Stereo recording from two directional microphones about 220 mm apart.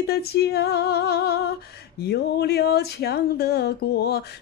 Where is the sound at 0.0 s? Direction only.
45° left (ahead or behind).